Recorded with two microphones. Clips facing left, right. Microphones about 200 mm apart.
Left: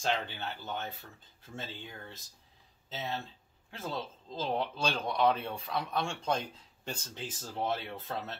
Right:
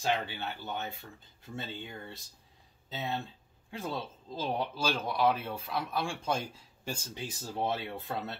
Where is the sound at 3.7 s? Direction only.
10° right (ahead or behind).